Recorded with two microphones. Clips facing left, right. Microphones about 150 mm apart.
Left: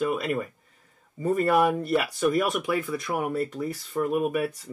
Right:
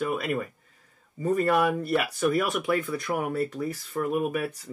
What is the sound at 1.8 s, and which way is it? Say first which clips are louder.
Speech: left 1 dB; centre (ahead or behind).